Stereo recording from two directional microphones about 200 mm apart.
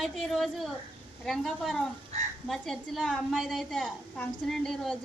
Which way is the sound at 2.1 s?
35° right (ahead or behind).